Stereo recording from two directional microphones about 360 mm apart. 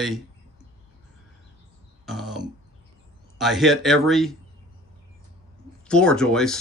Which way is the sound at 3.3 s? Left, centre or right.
Centre.